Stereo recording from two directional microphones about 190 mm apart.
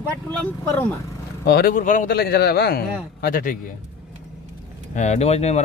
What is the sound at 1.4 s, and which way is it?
A man's voice, 55° left (ahead or behind).